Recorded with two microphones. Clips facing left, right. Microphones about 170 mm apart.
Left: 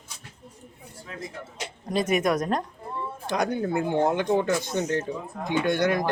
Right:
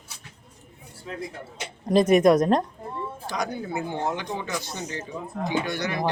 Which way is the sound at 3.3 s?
60° left (ahead or behind).